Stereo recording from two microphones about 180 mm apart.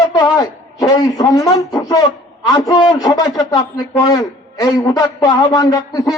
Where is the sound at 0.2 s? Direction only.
20° left (ahead or behind).